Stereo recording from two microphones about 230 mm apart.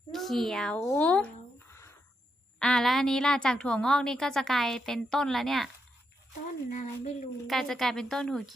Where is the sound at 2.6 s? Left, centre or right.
Centre.